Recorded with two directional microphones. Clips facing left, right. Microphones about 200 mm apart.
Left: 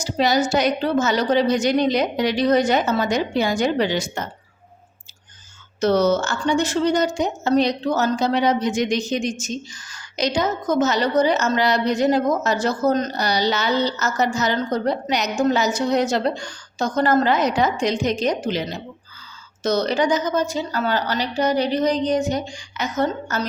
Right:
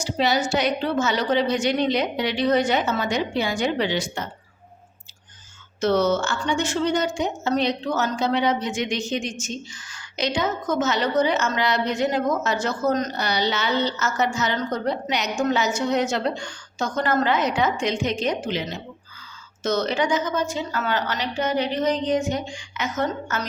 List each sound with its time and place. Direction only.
0.0 s a woman's voice: 40° left (ahead or behind)
5.8 s a woman's voice: 40° left (ahead or behind)